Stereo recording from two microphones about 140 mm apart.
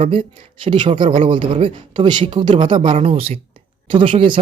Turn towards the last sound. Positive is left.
turn(degrees=-40)  # may be behind; listen again after turning